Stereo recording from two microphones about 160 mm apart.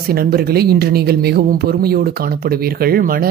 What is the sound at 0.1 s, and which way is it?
Speech, 70° right (ahead or behind).